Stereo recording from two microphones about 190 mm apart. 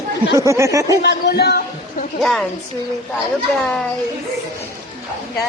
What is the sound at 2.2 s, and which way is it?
Speech, centre (ahead or behind).